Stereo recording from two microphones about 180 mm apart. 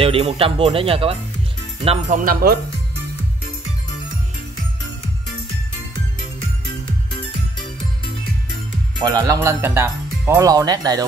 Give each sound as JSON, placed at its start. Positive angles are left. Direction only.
{"t": 0.0, "sound": "speech", "side_deg": -30}
{"t": 2.0, "sound": "speech", "side_deg": -50}
{"t": 9.0, "sound": "speech", "side_deg": -20}